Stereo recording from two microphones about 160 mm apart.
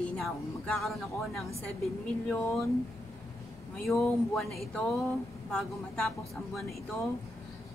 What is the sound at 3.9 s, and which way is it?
A woman's voice, 10° left (ahead or behind).